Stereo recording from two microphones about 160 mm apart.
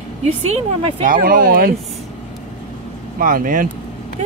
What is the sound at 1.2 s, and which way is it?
Speech, 65° right (ahead or behind).